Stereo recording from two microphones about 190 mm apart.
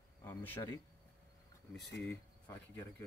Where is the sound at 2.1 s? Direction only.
10° left (ahead or behind).